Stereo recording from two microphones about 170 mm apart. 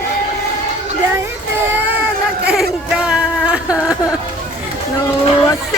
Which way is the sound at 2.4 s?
5° right (ahead or behind).